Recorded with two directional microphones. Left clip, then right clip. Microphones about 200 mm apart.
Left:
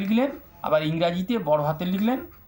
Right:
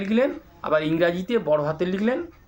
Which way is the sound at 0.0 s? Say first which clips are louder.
Right 3 dB; 30° right (ahead or behind).